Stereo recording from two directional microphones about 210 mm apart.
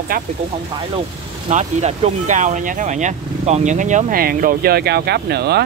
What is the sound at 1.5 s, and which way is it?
Speech, 35° right (ahead or behind).